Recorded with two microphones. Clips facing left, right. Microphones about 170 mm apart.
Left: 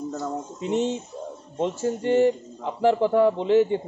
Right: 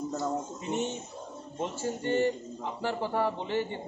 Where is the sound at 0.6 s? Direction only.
90° left.